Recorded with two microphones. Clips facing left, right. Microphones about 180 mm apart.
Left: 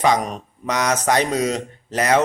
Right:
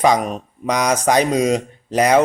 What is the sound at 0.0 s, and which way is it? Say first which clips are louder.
A man's voice: right 3 dB; 10° right (ahead or behind).